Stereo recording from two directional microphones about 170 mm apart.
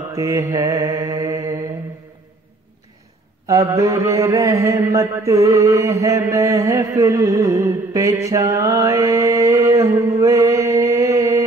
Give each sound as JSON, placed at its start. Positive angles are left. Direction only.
{"t": 0.1, "sound": "mantra", "side_deg": -20}
{"t": 3.4, "sound": "mantra", "side_deg": -20}